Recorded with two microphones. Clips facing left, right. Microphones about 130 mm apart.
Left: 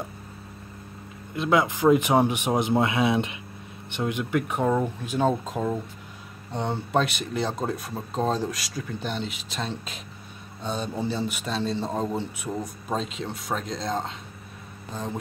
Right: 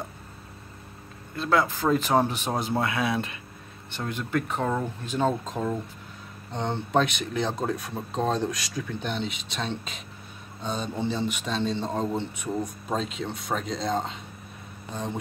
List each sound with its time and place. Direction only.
1.3 s a man's voice: 15° left (ahead or behind); by 14.1 s centre (ahead or behind)